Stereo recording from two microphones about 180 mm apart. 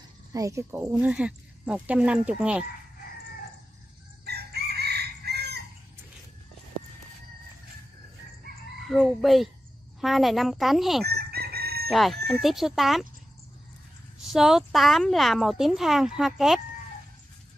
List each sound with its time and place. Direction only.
0.3 s speech: 15° right (ahead or behind)
4.2 s chicken: 65° right (ahead or behind)
8.8 s speech: centre (ahead or behind)
11.1 s chicken: 60° right (ahead or behind)
11.9 s speech: centre (ahead or behind)
14.3 s speech: centre (ahead or behind)